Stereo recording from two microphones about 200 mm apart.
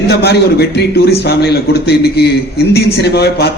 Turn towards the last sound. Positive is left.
turn(degrees=55)  # may be behind; listen again after turning